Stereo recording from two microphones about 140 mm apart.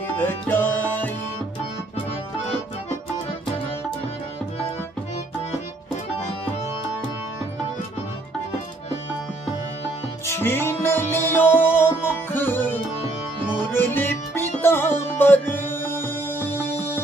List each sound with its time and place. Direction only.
0.3 s music: 15° left (ahead or behind)
10.2 s music: 15° left (ahead or behind)